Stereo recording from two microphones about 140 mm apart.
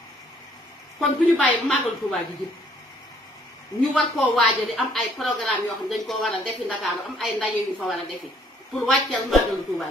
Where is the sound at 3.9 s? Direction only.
Centre (ahead or behind).